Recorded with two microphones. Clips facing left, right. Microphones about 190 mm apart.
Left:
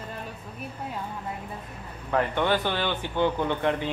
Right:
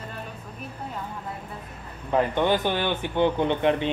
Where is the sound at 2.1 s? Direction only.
15° right (ahead or behind).